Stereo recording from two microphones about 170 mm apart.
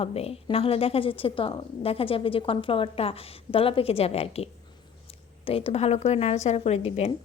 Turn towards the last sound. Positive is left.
turn(degrees=35)  # may be behind; listen again after turning